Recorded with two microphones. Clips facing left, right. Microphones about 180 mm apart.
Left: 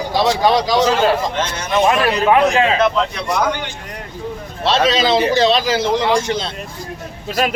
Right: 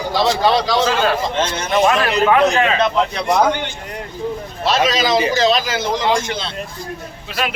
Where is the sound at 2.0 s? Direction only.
25° left (ahead or behind).